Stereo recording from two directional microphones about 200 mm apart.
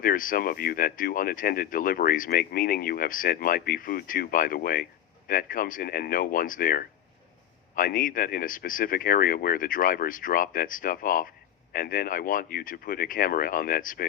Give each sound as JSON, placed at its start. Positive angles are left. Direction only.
{"t": 0.0, "sound": "speech", "side_deg": 45}